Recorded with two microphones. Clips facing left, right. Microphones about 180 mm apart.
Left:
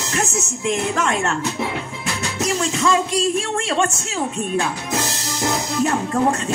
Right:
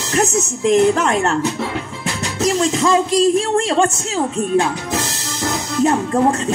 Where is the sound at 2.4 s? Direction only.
30° right (ahead or behind).